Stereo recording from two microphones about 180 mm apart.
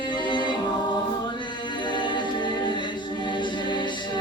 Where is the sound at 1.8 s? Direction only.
25° left (ahead or behind).